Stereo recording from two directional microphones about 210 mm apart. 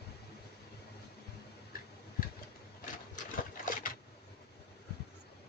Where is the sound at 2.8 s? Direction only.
40° left (ahead or behind).